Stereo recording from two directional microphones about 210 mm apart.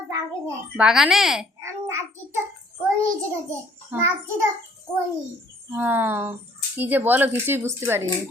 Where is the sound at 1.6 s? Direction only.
15° right (ahead or behind).